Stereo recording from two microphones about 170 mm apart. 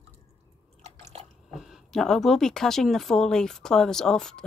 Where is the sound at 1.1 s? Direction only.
40° right (ahead or behind).